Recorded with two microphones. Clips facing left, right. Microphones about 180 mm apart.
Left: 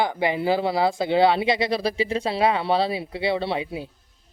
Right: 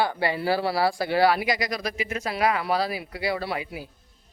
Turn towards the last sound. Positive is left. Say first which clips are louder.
# left 4 dB
turn(degrees=25)  # may be behind; listen again after turning